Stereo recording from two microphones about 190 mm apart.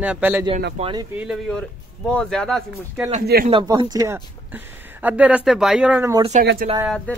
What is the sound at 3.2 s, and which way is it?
Speech, 55° right (ahead or behind).